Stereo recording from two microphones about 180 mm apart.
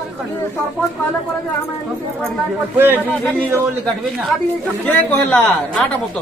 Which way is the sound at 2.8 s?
10° right (ahead or behind).